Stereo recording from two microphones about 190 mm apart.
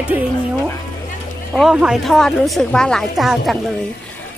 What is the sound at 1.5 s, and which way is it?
A woman's voice, centre (ahead or behind).